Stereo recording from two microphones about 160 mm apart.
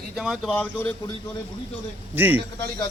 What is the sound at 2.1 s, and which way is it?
Speech, 10° right (ahead or behind).